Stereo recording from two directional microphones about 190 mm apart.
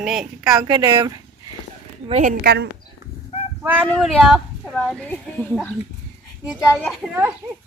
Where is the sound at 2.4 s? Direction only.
55° right (ahead or behind).